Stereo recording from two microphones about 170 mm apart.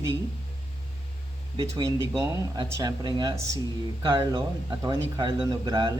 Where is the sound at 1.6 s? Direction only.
25° right (ahead or behind).